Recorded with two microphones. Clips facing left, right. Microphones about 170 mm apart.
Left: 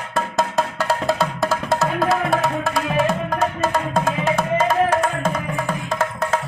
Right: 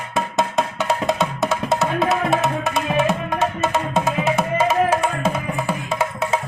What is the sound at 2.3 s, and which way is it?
Music, 20° right (ahead or behind).